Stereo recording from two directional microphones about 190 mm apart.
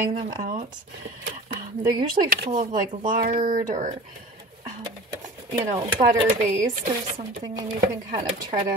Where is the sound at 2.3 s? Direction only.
50° right (ahead or behind).